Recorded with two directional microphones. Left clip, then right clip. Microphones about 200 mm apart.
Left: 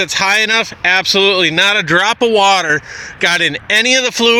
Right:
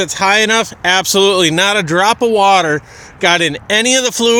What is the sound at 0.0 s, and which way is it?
Speech, 5° right (ahead or behind).